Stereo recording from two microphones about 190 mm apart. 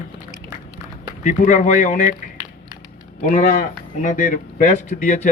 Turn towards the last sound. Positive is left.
turn(degrees=40)  # may be behind; listen again after turning